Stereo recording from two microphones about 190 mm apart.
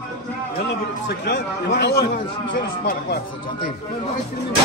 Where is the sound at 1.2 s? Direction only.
60° left (ahead or behind).